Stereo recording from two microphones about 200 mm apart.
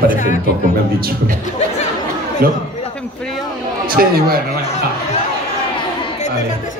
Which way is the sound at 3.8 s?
50° right (ahead or behind).